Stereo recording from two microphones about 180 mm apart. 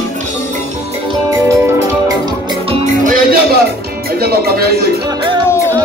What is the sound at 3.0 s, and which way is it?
Music, 50° right (ahead or behind).